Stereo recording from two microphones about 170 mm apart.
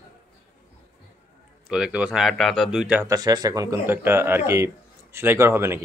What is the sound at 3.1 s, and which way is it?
Speech, 25° right (ahead or behind).